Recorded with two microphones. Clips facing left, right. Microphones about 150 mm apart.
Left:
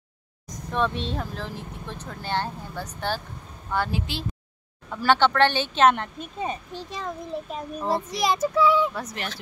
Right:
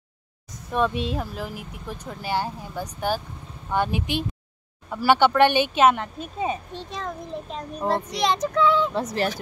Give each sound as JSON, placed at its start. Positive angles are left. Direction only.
{"t": 0.7, "sound": "speech", "side_deg": -10}
{"t": 8.2, "sound": "child singing", "side_deg": 5}